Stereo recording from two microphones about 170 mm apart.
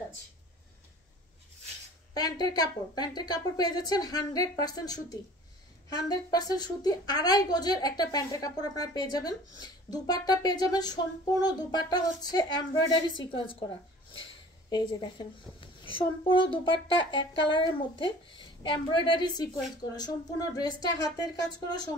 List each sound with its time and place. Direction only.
2.1 s a woman's voice: 25° left (ahead or behind)
14.7 s a woman's voice: 25° left (ahead or behind)